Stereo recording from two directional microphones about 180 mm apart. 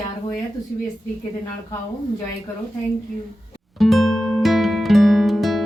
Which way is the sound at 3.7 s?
Centre (ahead or behind).